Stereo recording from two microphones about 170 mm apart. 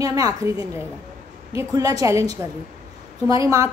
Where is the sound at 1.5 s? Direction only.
20° right (ahead or behind).